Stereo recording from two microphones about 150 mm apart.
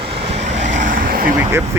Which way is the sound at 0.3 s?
45° right (ahead or behind).